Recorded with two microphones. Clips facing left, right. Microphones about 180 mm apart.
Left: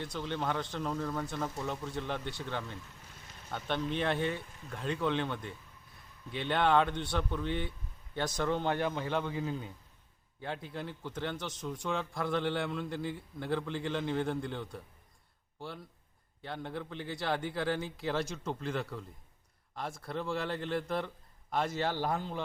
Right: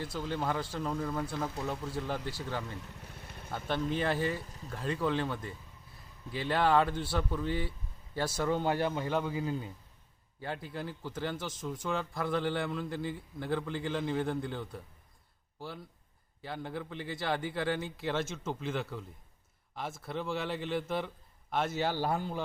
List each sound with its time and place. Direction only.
0.0 s a man's voice: 5° right (ahead or behind)
3.0 s vehicle: 60° right (ahead or behind)
3.5 s a man's voice: 5° right (ahead or behind)